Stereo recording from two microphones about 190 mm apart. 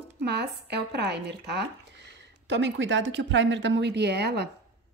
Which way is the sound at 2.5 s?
75° right (ahead or behind).